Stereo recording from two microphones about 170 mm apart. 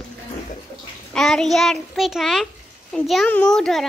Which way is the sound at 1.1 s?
Centre (ahead or behind).